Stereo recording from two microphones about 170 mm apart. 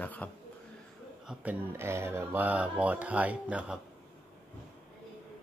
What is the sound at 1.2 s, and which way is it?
Speech, 10° right (ahead or behind).